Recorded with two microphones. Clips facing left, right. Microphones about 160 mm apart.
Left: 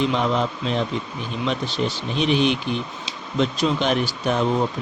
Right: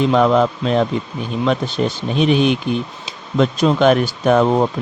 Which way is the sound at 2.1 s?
50° right (ahead or behind).